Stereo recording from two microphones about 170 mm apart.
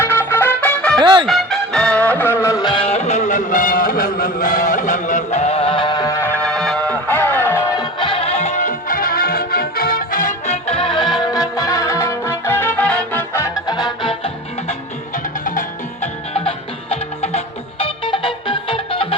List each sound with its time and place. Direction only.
0.0 s music: 10° left (ahead or behind)
1.0 s speech: 25° right (ahead or behind)
1.3 s music: centre (ahead or behind); by 14.2 s 25° left (ahead or behind)
14.7 s music: 50° left (ahead or behind); by 19.0 s 30° left (ahead or behind)